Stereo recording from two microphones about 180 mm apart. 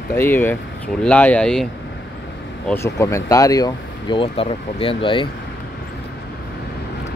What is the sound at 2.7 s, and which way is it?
Speech, 15° left (ahead or behind).